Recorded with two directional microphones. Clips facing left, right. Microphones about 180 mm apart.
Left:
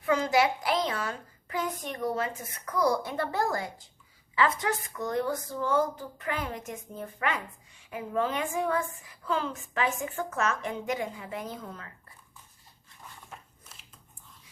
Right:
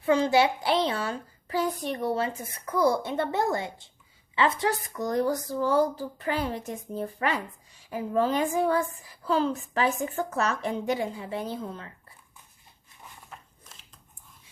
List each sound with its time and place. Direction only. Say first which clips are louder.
0.0 s a child's voice: right 3 dB; 30° right (ahead or behind)